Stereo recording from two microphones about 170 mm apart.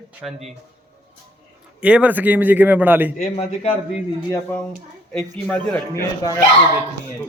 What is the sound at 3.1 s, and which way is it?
Speech, 40° left (ahead or behind).